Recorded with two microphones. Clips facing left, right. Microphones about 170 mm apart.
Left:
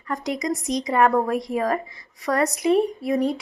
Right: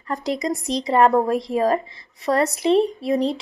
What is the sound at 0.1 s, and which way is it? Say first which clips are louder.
A woman's voice: right 2 dB; 30° right (ahead or behind).